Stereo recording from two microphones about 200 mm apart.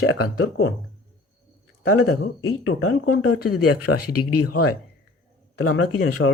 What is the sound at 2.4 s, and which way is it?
Speech, 85° left.